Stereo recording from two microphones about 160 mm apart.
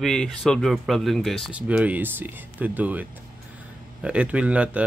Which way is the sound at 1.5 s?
10° right (ahead or behind).